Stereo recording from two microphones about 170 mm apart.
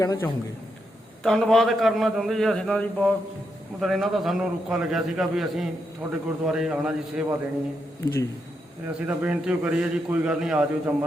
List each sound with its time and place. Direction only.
0.0 s a man's voice: 20° left (ahead or behind)
1.2 s a man's voice: centre (ahead or behind)
8.9 s a man's voice: 5° right (ahead or behind)